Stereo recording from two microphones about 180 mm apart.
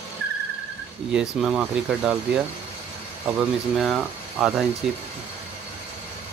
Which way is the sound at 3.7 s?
Centre (ahead or behind).